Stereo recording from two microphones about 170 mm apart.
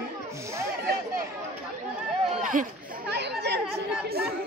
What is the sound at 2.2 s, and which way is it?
Chatter, 45° right (ahead or behind).